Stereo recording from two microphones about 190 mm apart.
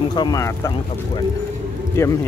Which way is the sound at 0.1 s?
20° left (ahead or behind).